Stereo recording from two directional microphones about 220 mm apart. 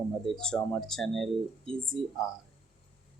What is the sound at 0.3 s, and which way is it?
Speech, 5° left (ahead or behind).